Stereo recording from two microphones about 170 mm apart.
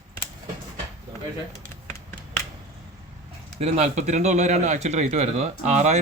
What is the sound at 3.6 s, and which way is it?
Speech, 45° right (ahead or behind).